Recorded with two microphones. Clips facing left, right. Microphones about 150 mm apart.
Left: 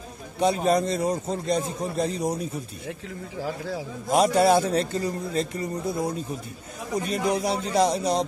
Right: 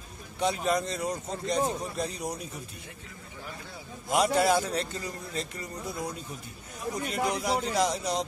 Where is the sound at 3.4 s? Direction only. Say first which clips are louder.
Left 13 dB; 90° left.